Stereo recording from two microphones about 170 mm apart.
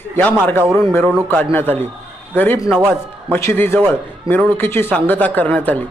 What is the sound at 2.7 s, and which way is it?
Speech, 5° right (ahead or behind).